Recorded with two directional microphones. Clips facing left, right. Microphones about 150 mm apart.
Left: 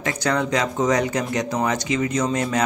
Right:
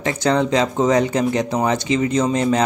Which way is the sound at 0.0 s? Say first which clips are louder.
Right 4 dB; 25° right (ahead or behind).